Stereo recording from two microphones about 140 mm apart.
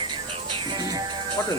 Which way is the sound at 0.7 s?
30° right (ahead or behind).